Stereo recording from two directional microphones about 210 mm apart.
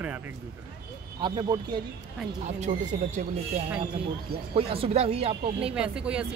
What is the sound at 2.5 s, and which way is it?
Speech, 35° right (ahead or behind).